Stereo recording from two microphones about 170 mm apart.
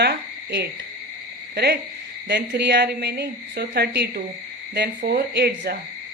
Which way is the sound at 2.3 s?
85° right.